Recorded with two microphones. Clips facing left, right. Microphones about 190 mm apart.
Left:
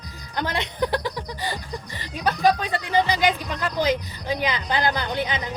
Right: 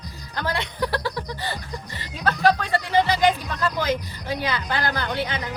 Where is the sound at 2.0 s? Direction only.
15° left (ahead or behind).